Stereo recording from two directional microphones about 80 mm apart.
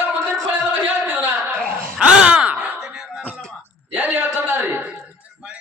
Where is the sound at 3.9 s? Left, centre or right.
Right.